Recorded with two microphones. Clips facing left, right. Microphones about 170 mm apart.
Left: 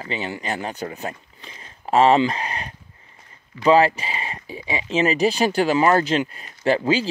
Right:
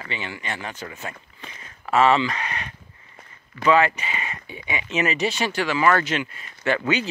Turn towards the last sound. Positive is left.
turn(degrees=30)  # may be behind; listen again after turning